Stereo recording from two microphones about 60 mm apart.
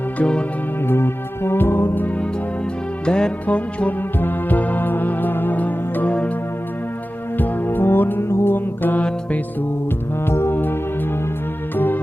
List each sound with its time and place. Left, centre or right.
0.2 s music: centre
0.9 s music: left
3.1 s music: centre
7.3 s music: left
8.3 s music: left
8.5 s music: left
10.2 s music: left